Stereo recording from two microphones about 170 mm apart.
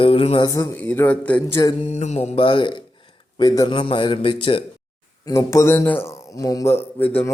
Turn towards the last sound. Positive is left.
turn(degrees=10)  # may be behind; listen again after turning